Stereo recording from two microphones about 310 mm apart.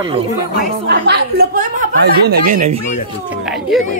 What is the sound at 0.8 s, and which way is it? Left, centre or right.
A woman's voice, right.